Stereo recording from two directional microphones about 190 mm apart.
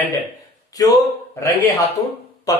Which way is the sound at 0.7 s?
20° left (ahead or behind).